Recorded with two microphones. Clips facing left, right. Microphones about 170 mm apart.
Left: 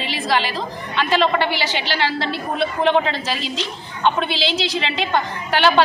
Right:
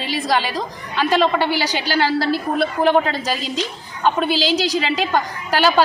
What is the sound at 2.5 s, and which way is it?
Speech, 5° right (ahead or behind).